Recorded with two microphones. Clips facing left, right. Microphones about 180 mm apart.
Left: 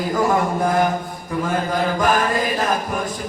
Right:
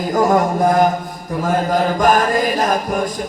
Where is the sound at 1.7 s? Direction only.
45° right (ahead or behind).